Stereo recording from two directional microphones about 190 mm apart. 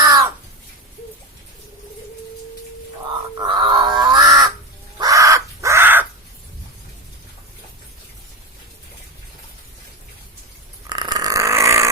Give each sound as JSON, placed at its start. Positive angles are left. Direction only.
{"t": 0.0, "sound": "crow", "side_deg": -20}
{"t": 3.3, "sound": "grunt", "side_deg": -25}
{"t": 4.9, "sound": "crow", "side_deg": -20}
{"t": 10.8, "sound": "a sound", "side_deg": -20}